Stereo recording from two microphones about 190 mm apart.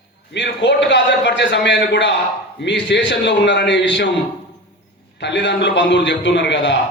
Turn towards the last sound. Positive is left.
turn(degrees=65)  # may be behind; listen again after turning